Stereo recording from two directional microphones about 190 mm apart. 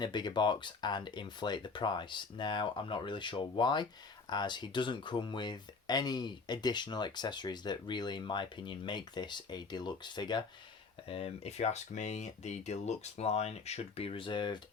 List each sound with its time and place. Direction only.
0.0 s speech: 25° left (ahead or behind)
11.1 s speech: 30° left (ahead or behind)